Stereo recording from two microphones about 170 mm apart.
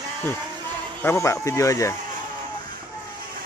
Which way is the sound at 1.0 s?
15° left (ahead or behind).